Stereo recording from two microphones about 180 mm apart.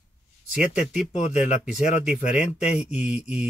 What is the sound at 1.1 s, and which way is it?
Speech, 40° left (ahead or behind).